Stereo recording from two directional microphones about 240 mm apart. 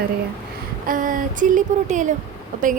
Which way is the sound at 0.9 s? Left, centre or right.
Right.